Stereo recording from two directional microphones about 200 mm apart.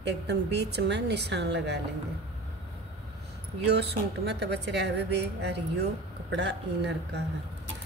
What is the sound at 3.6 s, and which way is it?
A woman's voice, 55° right (ahead or behind).